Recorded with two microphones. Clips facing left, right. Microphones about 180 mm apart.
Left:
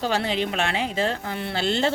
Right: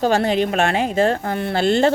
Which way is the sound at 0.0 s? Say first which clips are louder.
Right 7 dB; 45° right (ahead or behind).